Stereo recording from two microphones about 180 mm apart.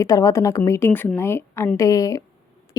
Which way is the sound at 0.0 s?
20° left (ahead or behind).